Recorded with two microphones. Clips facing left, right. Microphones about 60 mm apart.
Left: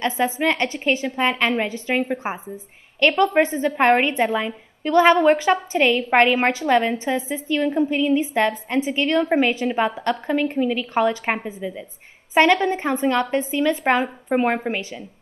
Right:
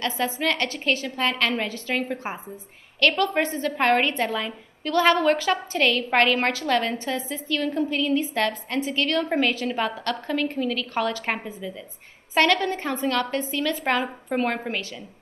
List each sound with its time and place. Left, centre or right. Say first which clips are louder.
0.0 s a woman's voice: left 4 dB; left